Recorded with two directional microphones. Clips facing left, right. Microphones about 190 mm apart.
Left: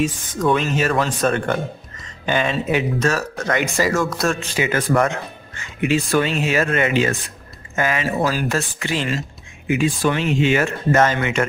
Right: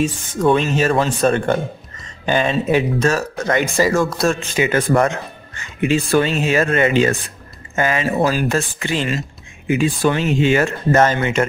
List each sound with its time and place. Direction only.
0.0 s speech: 30° right (ahead or behind)